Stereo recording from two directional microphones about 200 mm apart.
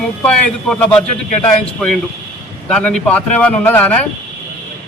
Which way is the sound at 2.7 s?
5° left (ahead or behind).